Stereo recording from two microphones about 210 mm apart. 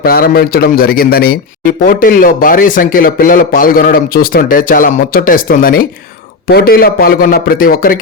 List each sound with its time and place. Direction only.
0.0 s a man's voice: 45° left (ahead or behind)